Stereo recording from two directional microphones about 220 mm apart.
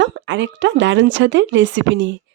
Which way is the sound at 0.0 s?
55° right (ahead or behind).